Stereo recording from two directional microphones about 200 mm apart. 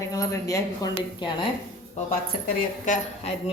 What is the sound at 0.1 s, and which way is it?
A woman's voice, 15° left (ahead or behind).